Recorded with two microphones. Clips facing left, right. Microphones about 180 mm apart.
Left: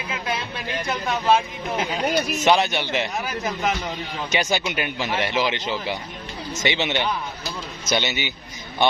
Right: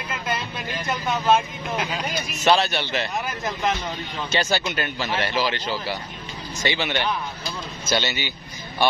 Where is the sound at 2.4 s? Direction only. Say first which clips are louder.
Right 1 dB; 15° left (ahead or behind).